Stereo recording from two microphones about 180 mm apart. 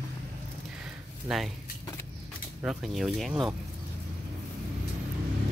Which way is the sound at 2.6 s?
5° right (ahead or behind).